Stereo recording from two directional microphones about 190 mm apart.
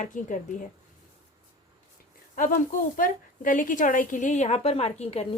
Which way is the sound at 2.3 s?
45° left (ahead or behind).